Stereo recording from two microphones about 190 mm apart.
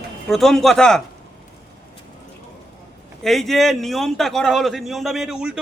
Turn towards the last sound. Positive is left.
turn(degrees=-5)  # may be behind; listen again after turning